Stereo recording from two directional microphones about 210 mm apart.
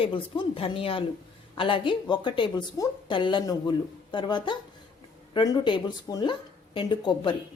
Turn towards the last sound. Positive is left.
turn(degrees=25)  # may be behind; listen again after turning